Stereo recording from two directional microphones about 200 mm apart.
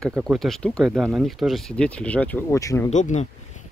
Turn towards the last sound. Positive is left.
turn(degrees=35)  # may be behind; listen again after turning